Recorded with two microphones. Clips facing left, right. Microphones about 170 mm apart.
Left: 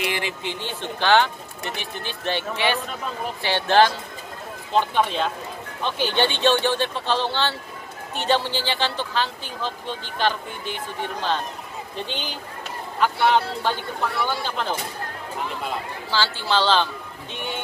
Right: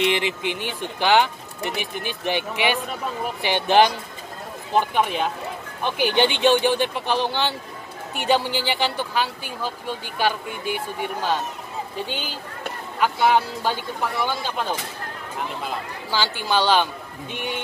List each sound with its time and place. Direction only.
0.0 s speech: 20° right (ahead or behind)
16.1 s speech: 15° right (ahead or behind)